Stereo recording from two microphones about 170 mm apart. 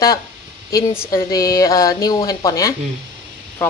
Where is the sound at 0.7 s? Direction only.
20° left (ahead or behind).